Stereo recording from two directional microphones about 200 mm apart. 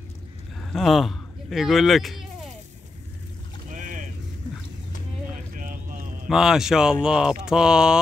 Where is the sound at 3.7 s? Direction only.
40° right (ahead or behind).